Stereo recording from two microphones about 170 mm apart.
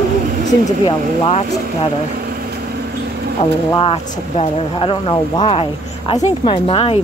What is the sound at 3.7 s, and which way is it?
Speech, 30° left (ahead or behind).